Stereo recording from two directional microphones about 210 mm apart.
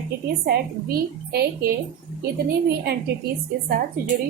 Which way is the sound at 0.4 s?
50° right (ahead or behind).